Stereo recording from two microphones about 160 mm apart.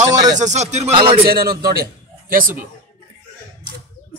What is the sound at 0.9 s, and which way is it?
Speech, 35° right (ahead or behind).